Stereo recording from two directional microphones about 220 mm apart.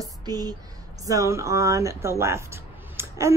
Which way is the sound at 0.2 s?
20° right (ahead or behind).